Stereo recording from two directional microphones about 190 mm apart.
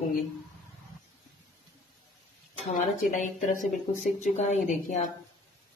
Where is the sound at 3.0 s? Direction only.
45° left (ahead or behind).